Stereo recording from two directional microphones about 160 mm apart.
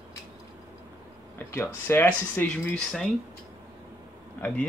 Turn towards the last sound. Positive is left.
turn(degrees=10)  # may be behind; listen again after turning